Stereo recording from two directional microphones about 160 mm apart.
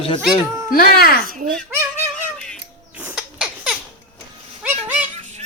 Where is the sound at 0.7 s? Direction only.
70° left (ahead or behind).